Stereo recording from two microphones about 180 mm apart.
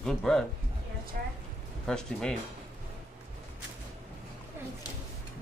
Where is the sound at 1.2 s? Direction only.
55° right (ahead or behind).